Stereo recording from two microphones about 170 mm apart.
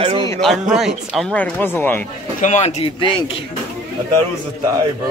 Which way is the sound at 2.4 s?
45° left (ahead or behind).